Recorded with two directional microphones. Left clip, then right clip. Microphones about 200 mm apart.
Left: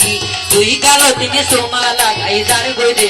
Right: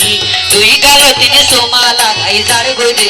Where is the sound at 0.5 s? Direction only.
60° left (ahead or behind).